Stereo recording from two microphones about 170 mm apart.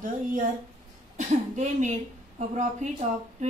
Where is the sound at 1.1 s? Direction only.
45° right (ahead or behind).